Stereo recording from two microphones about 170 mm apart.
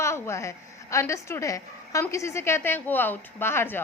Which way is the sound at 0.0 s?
15° left (ahead or behind).